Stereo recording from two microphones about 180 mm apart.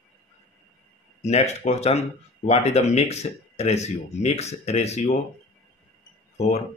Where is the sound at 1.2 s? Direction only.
40° left (ahead or behind).